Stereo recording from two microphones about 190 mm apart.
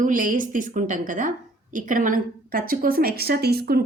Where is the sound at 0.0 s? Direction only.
45° right (ahead or behind).